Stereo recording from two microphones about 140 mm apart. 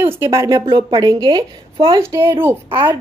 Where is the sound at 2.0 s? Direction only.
20° right (ahead or behind).